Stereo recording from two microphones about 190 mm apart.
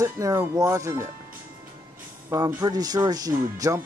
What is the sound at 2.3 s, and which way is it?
Speech, 15° right (ahead or behind).